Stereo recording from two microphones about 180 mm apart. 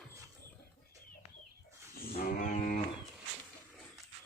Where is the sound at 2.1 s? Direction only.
50° left (ahead or behind).